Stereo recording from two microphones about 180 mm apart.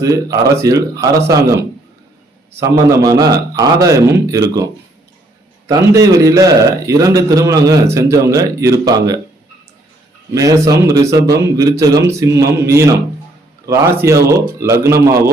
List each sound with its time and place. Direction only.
0.0 s a man's voice: 20° right (ahead or behind)
2.6 s a man's voice: 20° right (ahead or behind)
10.3 s a man's voice: 20° right (ahead or behind)